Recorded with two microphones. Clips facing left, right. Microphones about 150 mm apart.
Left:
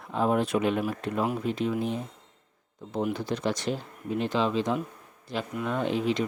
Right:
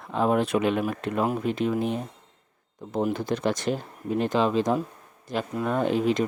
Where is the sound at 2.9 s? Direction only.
50° right (ahead or behind).